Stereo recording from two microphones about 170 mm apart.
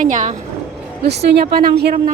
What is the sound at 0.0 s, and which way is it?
Speech, 50° right (ahead or behind).